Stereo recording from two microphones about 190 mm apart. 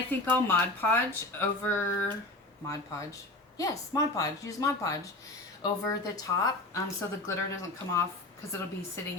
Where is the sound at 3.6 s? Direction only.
20° left (ahead or behind).